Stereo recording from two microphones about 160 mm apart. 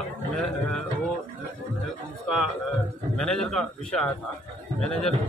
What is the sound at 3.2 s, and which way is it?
Speech, 5° left (ahead or behind).